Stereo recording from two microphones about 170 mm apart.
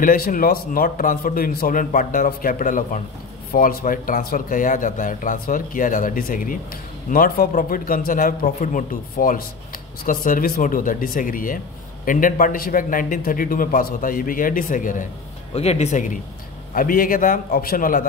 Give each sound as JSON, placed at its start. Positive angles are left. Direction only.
{"t": 0.0, "sound": "a man's voice", "side_deg": 55}
{"t": 15.5, "sound": "a man's voice", "side_deg": 40}